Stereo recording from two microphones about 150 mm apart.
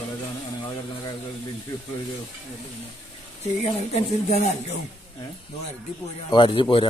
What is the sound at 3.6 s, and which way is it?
Speech, 45° left (ahead or behind).